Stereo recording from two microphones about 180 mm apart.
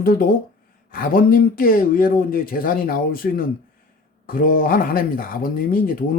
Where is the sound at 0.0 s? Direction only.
55° left (ahead or behind).